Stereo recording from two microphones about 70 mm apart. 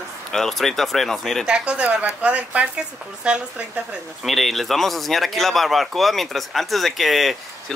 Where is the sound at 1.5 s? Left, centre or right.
Centre.